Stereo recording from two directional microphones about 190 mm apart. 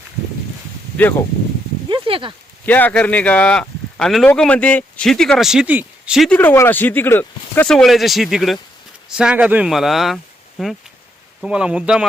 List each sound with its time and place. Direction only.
1.9 s speech: 25° right (ahead or behind)
2.6 s speech: 10° left (ahead or behind)